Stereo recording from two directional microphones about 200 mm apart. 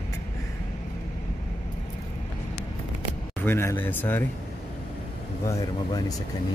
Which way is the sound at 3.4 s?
10° left (ahead or behind).